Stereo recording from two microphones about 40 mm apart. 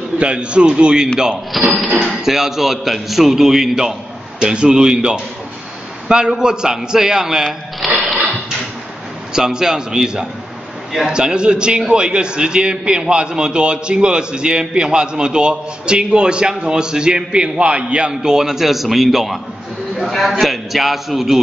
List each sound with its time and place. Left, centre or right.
0.2 s a man's voice: right
1.7 s a man's voice: centre
4.4 s a man's voice: right
7.8 s a sound: centre
9.3 s a man's voice: centre